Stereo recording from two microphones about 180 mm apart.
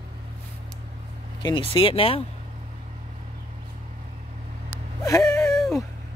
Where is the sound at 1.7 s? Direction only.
30° left (ahead or behind).